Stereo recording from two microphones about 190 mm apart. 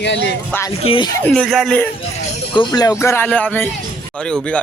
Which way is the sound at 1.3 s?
Centre (ahead or behind).